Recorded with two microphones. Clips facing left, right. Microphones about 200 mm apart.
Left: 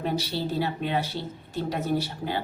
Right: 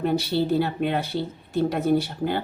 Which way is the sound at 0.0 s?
55° right (ahead or behind).